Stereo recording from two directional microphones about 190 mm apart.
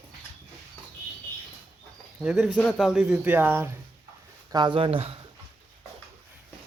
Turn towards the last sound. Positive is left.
turn(degrees=-30)  # may be behind; listen again after turning